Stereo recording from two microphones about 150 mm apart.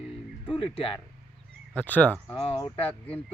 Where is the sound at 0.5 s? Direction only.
35° left (ahead or behind).